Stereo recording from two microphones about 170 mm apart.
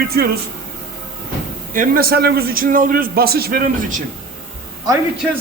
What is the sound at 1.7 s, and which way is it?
A man's voice, 55° right (ahead or behind).